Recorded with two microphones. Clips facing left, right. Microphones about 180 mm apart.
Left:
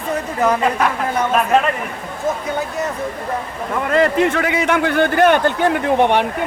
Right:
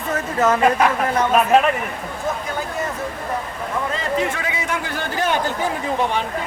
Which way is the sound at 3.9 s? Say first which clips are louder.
Left 11 dB; 65° left (ahead or behind).